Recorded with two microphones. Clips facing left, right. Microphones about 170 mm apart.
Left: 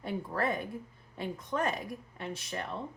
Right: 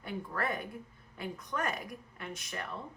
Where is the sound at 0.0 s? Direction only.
30° left (ahead or behind).